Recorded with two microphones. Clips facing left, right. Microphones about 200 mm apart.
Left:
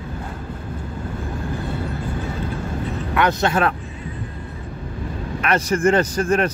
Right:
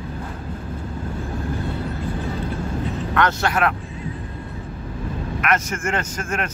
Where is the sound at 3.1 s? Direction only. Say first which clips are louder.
Left 2 dB; 15° left (ahead or behind).